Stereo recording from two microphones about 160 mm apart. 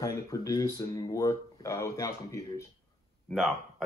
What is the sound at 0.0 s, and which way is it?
Speech, 20° left (ahead or behind).